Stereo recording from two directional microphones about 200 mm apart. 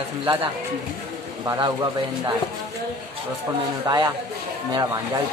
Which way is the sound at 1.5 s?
20° right (ahead or behind).